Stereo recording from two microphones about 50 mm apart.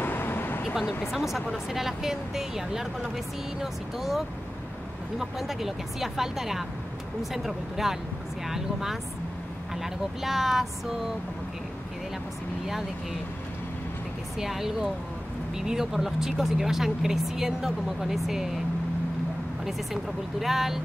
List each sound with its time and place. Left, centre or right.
0.0 s vehicle: left
1.1 s speech: centre
5.2 s speech: centre
14.4 s speech: centre
19.6 s speech: centre